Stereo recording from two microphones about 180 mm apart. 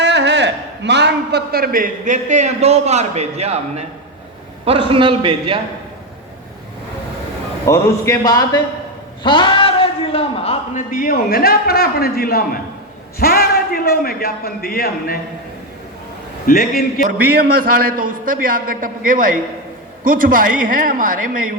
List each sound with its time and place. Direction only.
0.0 s a man's voice: 75° right (ahead or behind); by 5.5 s 25° right (ahead or behind)
7.7 s a man's voice: 15° left (ahead or behind)
9.2 s a sound: 25° left (ahead or behind)
10.9 s a man's voice: 55° left (ahead or behind)
16.5 s a man's voice: 55° left (ahead or behind)
17.3 s a man's voice: 55° right (ahead or behind)